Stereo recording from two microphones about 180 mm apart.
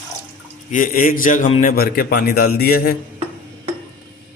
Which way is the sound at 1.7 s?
55° left (ahead or behind).